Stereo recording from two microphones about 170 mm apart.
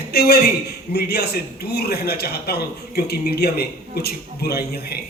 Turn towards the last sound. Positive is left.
turn(degrees=70)  # may be behind; listen again after turning